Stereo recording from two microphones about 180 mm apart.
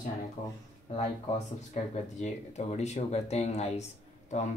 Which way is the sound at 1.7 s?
40° left (ahead or behind).